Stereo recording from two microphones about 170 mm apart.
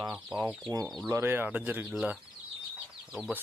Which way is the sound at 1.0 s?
15° right (ahead or behind).